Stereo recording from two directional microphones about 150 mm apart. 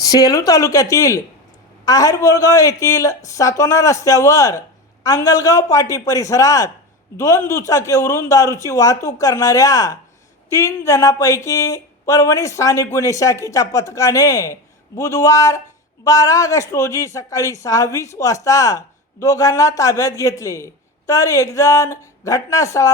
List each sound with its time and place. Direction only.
0.0 s speech: 25° left (ahead or behind)